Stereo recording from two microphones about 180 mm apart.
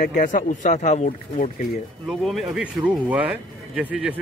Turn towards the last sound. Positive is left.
turn(degrees=-5)  # may be behind; listen again after turning